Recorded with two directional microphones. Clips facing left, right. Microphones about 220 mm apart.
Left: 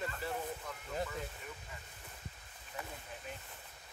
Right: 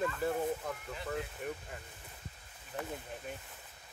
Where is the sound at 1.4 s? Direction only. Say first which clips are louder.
Right 10 dB; 60° right (ahead or behind).